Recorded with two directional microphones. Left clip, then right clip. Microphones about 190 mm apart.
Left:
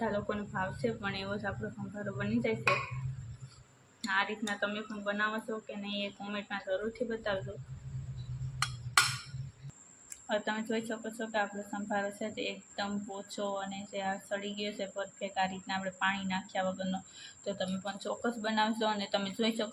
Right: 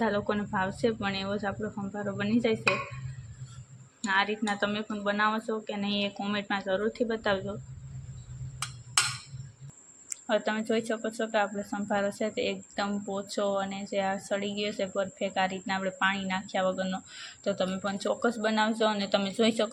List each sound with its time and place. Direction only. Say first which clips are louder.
0.0 s speech: right 6 dB; 40° right (ahead or behind)
4.0 s speech: right 5 dB; 40° right (ahead or behind)
10.1 s speech: right 5 dB; 30° right (ahead or behind)